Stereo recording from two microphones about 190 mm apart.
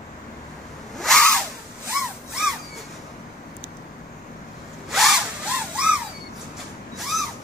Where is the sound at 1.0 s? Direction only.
5° left (ahead or behind).